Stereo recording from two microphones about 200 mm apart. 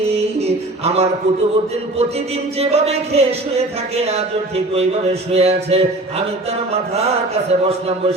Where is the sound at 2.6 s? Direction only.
30° right (ahead or behind).